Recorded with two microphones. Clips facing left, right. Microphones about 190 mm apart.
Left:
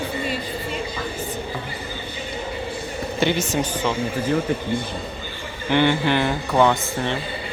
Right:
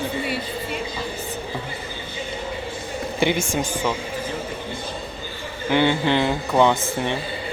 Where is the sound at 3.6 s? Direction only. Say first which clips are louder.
Left 1 dB; 10° right (ahead or behind).